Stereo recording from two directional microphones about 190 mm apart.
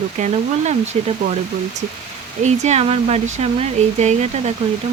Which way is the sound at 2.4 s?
35° right (ahead or behind).